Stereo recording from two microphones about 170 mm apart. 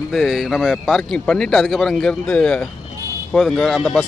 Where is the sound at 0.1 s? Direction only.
Centre (ahead or behind).